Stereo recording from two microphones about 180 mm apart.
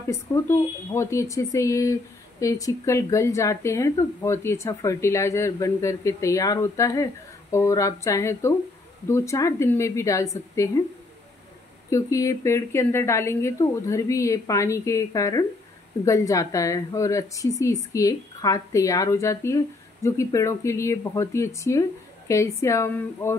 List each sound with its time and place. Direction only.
0.0 s a woman's voice: 15° left (ahead or behind)
11.9 s a woman's voice: 15° left (ahead or behind)